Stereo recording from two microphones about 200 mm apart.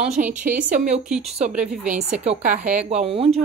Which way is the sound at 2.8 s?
30° right (ahead or behind).